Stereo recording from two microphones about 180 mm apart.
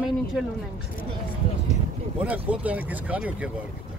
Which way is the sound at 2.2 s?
10° right (ahead or behind).